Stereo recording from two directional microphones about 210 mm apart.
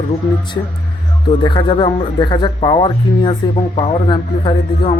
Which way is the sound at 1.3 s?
20° left (ahead or behind).